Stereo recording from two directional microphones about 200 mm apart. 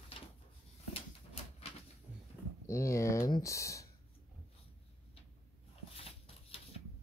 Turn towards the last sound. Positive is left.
turn(degrees=30)  # may be behind; listen again after turning